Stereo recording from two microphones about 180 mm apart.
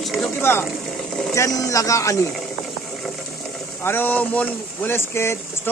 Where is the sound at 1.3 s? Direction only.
20° left (ahead or behind).